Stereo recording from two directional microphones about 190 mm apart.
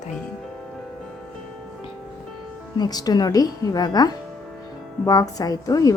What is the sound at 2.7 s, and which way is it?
Speech, 20° left (ahead or behind).